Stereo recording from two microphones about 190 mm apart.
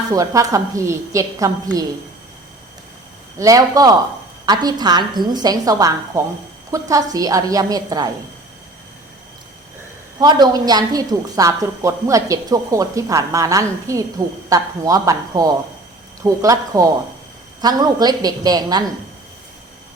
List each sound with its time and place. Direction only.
0.1 s a woman's voice: 20° right (ahead or behind)
3.3 s a woman's voice: 15° right (ahead or behind)
10.2 s a woman's voice: 20° right (ahead or behind)